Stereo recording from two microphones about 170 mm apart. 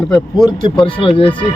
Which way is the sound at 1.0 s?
30° left (ahead or behind).